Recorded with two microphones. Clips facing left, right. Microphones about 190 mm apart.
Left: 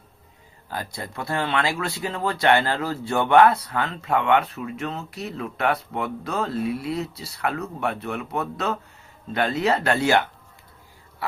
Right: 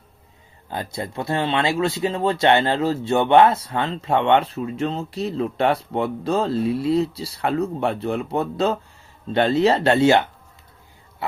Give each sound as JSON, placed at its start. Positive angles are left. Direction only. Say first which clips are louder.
{"t": 0.7, "sound": "speech", "louder": "right 4 dB", "side_deg": -25}